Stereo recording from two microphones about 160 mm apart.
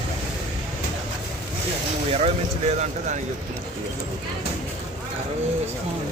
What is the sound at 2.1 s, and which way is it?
Speech, 45° right (ahead or behind).